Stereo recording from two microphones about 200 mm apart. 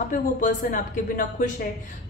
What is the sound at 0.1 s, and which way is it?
Speech, 40° left (ahead or behind).